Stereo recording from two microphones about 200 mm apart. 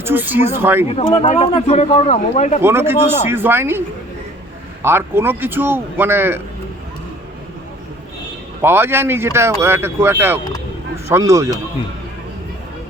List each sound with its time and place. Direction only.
0.0 s speech: 10° right (ahead or behind)
0.9 s speech: 30° left (ahead or behind)
2.6 s speech: 10° right (ahead or behind)
8.6 s speech: 10° right (ahead or behind)